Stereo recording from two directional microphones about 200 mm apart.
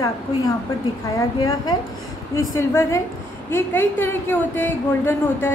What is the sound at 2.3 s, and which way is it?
A woman's voice, 15° left (ahead or behind).